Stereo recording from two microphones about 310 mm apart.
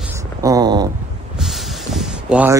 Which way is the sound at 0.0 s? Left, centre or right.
Centre.